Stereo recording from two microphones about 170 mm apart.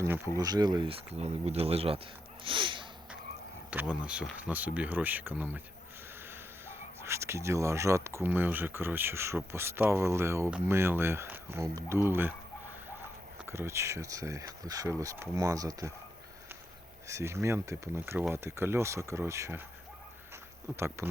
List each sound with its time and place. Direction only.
0.3 s speech: 25° right (ahead or behind)
1.2 s speech: 35° right (ahead or behind)
2.4 s a sound: 30° right (ahead or behind)
3.7 s speech: 5° right (ahead or behind)
7.0 s speech: 15° right (ahead or behind)
13.5 s speech: 15° right (ahead or behind)
17.1 s speech: 15° right (ahead or behind)
20.7 s speech: 15° right (ahead or behind)